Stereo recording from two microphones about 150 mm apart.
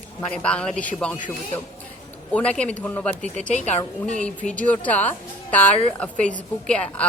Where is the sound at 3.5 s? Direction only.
45° left (ahead or behind).